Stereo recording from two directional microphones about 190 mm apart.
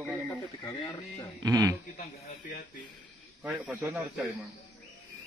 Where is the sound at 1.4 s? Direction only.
20° right (ahead or behind).